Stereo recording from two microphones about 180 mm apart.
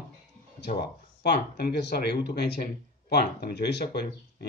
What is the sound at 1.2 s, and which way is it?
Speech, 65° left (ahead or behind).